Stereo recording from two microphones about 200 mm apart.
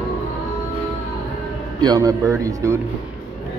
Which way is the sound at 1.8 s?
20° right (ahead or behind).